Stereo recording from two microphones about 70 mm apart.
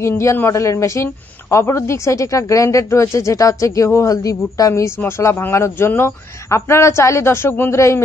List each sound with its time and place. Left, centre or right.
0.0 s a woman's voice: left
7.7 s a woman's voice: left